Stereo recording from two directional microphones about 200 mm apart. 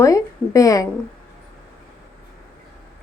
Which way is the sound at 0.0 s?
15° left (ahead or behind).